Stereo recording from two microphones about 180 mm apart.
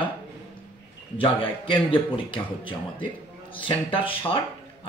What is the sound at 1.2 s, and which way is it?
Speech, 30° left (ahead or behind).